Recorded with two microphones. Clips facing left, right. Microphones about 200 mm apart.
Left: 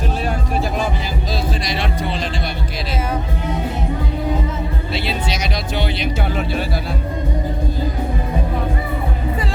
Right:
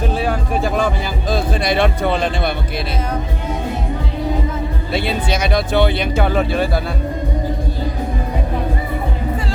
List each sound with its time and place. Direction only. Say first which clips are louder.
0.3 s music: right 3 dB; 50° right (ahead or behind)
1.3 s speech: right 7 dB; 55° right (ahead or behind)
4.9 s speech: right 5 dB; 55° right (ahead or behind)